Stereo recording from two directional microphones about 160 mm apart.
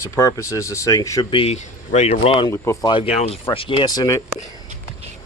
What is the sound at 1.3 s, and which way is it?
Speech, 35° left (ahead or behind).